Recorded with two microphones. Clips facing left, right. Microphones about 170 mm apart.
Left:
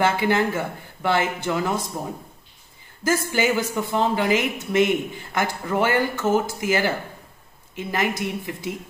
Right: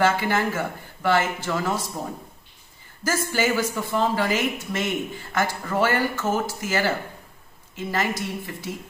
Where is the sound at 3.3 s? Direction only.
15° left (ahead or behind).